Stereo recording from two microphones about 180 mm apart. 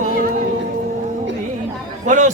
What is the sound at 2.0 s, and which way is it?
Speech, 45° right (ahead or behind).